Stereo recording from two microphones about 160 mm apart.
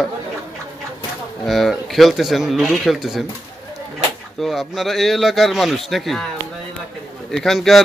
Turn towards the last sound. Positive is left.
turn(degrees=0)  # may be behind; listen again after turning